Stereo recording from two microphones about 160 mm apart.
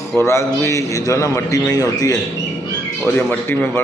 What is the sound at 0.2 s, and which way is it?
A man's voice, 15° left (ahead or behind).